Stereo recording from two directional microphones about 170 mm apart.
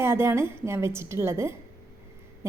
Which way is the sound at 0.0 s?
15° right (ahead or behind).